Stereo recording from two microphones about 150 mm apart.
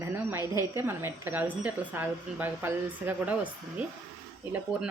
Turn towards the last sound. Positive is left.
turn(degrees=-5)  # may be behind; listen again after turning